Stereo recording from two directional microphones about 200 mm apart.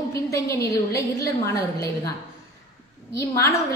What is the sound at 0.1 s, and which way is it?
A woman's voice, 15° left (ahead or behind).